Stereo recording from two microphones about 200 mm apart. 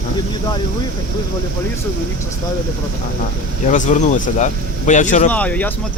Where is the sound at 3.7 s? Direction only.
35° left (ahead or behind).